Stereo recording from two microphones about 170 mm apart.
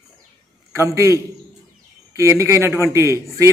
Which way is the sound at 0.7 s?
15° right (ahead or behind).